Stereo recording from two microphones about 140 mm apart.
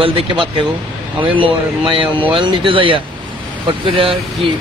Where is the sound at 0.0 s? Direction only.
40° right (ahead or behind).